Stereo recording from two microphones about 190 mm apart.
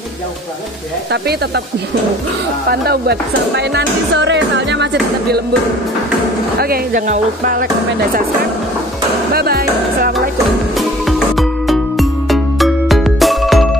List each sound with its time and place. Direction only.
1.1 s speech: 60° right (ahead or behind)
2.7 s speech: 60° right (ahead or behind)
6.6 s speech: 50° right (ahead or behind)
9.3 s music: 55° right (ahead or behind)
10.8 s music: centre (ahead or behind)